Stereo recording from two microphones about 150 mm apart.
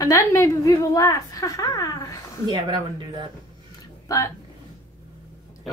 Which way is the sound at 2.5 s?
30° right (ahead or behind).